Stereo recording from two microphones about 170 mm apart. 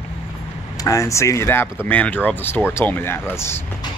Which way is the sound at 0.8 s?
20° left (ahead or behind).